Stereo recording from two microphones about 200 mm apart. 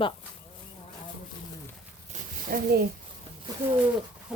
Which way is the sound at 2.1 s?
50° right (ahead or behind).